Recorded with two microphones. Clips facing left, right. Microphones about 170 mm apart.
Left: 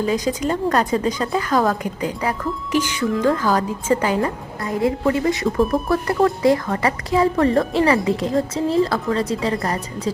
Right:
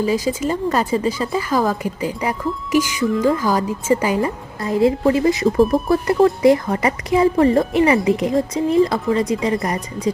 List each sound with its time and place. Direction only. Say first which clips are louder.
0.0 s a woman's voice: right 1 dB; 5° right (ahead or behind)